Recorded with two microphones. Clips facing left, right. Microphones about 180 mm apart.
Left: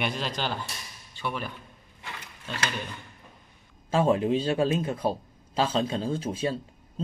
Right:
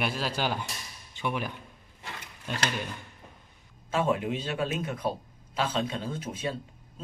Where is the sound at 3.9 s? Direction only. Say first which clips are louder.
Left 5 dB; 35° left (ahead or behind).